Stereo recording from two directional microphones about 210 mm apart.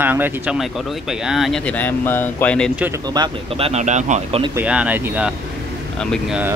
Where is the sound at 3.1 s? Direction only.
25° right (ahead or behind).